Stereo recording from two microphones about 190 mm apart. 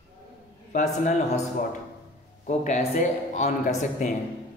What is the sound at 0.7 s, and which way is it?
A man's voice, 40° left (ahead or behind).